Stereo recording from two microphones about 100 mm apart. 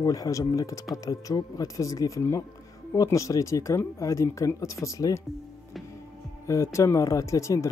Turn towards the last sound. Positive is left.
turn(degrees=30)  # may be behind; listen again after turning